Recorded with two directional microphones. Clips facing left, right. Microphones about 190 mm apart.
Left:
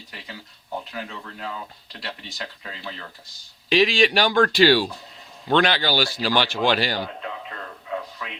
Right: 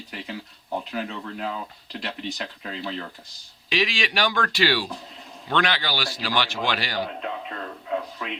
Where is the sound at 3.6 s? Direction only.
30° left (ahead or behind).